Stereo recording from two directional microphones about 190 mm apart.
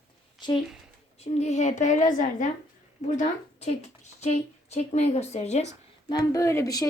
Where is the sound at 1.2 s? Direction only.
35° left (ahead or behind).